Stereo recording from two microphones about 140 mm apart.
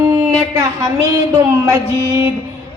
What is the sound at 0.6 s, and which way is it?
Music, 20° right (ahead or behind).